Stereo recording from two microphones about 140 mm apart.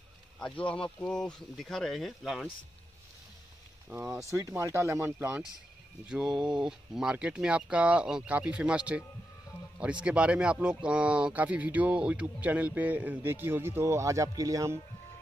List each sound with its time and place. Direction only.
0.7 s speech: 5° left (ahead or behind)
3.9 s speech: 15° right (ahead or behind)